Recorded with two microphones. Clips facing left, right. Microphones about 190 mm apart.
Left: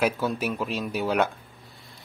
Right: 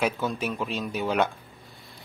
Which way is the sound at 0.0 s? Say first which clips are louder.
Left 2 dB; 10° left (ahead or behind).